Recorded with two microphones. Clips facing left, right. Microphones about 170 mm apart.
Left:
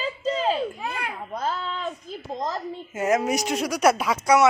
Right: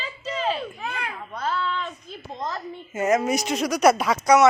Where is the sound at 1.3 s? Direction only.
35° left (ahead or behind).